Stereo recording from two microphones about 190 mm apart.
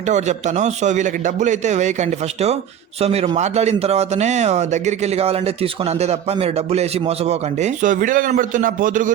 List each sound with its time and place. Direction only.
0.1 s speech: 40° right (ahead or behind)